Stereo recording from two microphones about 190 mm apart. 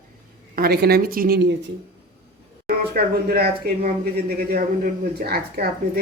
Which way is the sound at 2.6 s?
50° right (ahead or behind).